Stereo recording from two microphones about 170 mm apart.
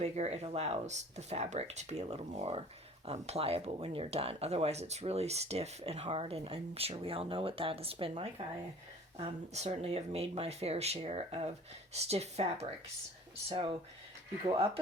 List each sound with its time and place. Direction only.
0.0 s speech: 40° right (ahead or behind)